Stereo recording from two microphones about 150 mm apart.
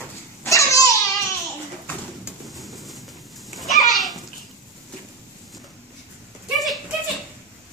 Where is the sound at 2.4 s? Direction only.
Centre (ahead or behind).